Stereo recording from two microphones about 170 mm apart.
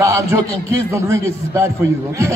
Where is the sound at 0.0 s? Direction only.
20° right (ahead or behind).